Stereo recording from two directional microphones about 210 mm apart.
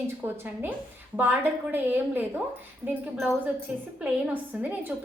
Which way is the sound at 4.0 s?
10° right (ahead or behind).